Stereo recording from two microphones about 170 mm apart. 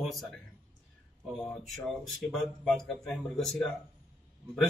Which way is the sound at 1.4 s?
Centre (ahead or behind).